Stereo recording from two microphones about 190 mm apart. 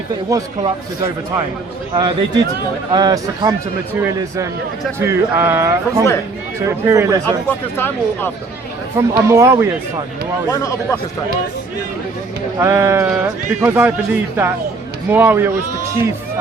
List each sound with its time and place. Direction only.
0.3 s a man's voice: 15° right (ahead or behind)
4.9 s a man's voice: 10° right (ahead or behind)
7.8 s speech: 10° left (ahead or behind)
9.0 s a man's voice: 15° right (ahead or behind)
10.5 s speech: 15° left (ahead or behind)
12.5 s a man's voice: 15° right (ahead or behind)